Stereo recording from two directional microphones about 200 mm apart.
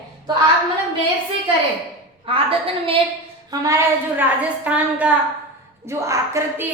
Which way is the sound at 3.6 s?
10° right (ahead or behind).